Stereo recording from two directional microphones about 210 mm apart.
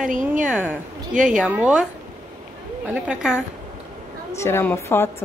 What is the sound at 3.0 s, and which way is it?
Speech, 5° right (ahead or behind).